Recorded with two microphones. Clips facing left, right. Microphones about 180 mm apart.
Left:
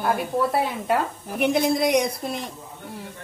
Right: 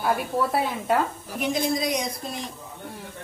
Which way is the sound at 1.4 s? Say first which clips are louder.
Left 5 dB; 65° left (ahead or behind).